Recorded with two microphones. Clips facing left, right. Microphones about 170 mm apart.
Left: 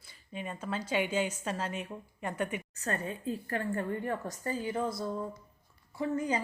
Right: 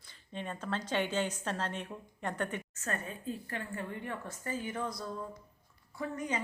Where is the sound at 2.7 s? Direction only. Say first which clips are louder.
Left 4 dB; 35° left (ahead or behind).